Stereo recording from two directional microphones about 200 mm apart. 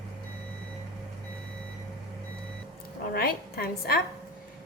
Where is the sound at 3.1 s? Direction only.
50° left (ahead or behind).